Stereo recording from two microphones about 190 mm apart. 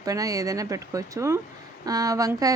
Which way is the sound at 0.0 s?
20° right (ahead or behind).